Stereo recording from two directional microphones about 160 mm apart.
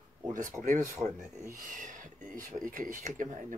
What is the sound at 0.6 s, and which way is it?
Speech, 50° right (ahead or behind).